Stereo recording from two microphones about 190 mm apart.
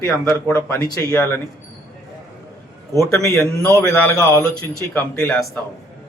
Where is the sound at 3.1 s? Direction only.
15° left (ahead or behind).